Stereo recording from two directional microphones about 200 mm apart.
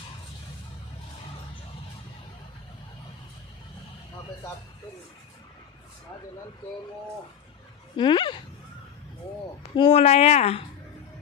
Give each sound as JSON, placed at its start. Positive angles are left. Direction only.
{"t": 7.9, "sound": "speech", "side_deg": 25}
{"t": 9.7, "sound": "speech", "side_deg": 25}